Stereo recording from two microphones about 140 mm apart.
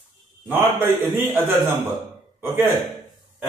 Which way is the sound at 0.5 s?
15° right (ahead or behind).